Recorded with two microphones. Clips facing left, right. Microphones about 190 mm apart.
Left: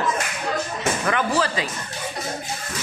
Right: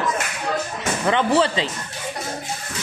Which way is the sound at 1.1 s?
25° right (ahead or behind).